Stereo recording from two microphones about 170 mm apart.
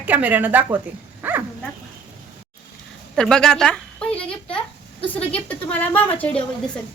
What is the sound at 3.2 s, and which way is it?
A woman's voice, 5° left (ahead or behind).